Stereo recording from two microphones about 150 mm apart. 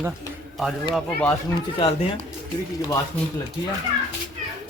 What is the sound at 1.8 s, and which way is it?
Speech, 40° left (ahead or behind).